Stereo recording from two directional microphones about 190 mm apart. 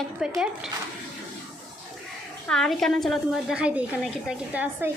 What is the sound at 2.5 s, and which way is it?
A woman's voice, centre (ahead or behind).